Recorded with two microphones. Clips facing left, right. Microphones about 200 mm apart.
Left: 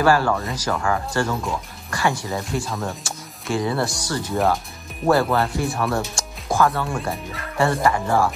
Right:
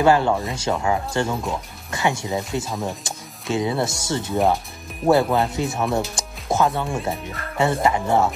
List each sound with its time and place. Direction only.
0.0 s speech: 20° right (ahead or behind)